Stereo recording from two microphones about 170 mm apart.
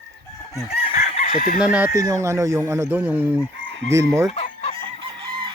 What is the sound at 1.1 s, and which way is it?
Chicken, 40° left (ahead or behind).